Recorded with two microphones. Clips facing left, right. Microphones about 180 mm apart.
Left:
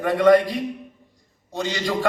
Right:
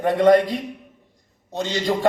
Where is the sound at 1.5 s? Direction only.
20° right (ahead or behind).